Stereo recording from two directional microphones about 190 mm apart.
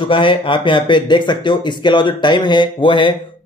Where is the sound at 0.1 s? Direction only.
25° left (ahead or behind).